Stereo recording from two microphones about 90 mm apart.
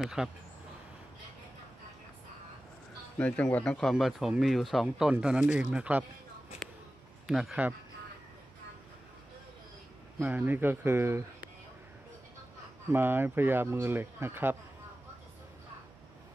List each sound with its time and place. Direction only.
0.0 s speech: 5° right (ahead or behind)
3.2 s speech: 15° left (ahead or behind)
3.9 s speech: 5° right (ahead or behind)
7.2 s speech: 5° right (ahead or behind)
10.3 s speech: 20° right (ahead or behind)
12.9 s speech: 25° right (ahead or behind)